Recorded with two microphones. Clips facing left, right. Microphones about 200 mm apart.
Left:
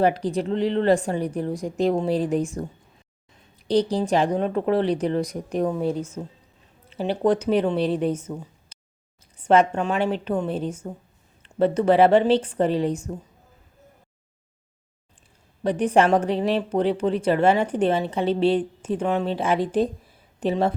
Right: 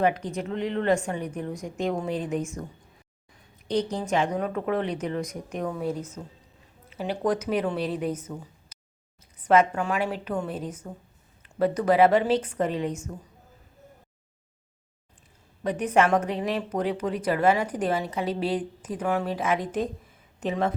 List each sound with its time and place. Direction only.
0.0 s speech: 35° left (ahead or behind)
3.7 s speech: 35° left (ahead or behind)
8.7 s a sound: 25° left (ahead or behind)
9.4 s speech: 30° left (ahead or behind)
15.6 s speech: 30° left (ahead or behind)